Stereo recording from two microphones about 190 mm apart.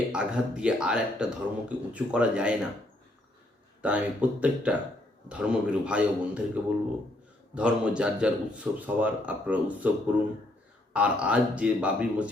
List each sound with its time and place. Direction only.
0.1 s speech: 5° right (ahead or behind)
3.8 s speech: 5° right (ahead or behind)
10.9 s speech: 5° right (ahead or behind)